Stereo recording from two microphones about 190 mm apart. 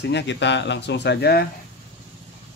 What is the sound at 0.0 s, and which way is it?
Speech, 65° left (ahead or behind).